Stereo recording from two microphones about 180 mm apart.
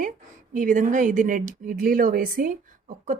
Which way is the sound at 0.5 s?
45° right (ahead or behind).